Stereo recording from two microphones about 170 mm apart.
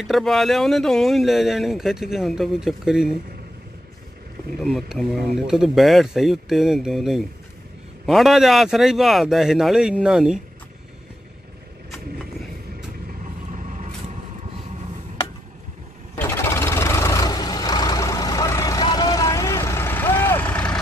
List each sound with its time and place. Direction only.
0.0 s speech: centre (ahead or behind)
4.6 s speech: centre (ahead or behind)
16.2 s vehicle: 10° left (ahead or behind)